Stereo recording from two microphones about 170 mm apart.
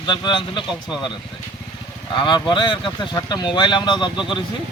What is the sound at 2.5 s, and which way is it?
A man's voice, 30° left (ahead or behind).